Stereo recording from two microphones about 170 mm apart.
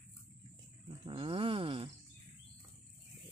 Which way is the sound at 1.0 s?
30° right (ahead or behind).